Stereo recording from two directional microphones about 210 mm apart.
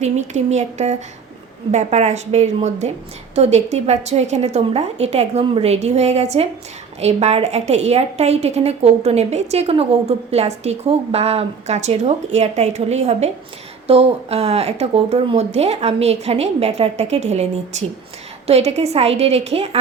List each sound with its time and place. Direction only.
0.0 s a woman's voice: 35° right (ahead or behind)